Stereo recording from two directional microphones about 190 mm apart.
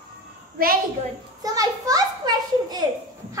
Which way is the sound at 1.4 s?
20° right (ahead or behind).